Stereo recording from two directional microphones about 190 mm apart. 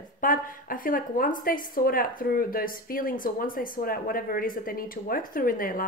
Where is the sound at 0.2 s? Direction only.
45° left (ahead or behind).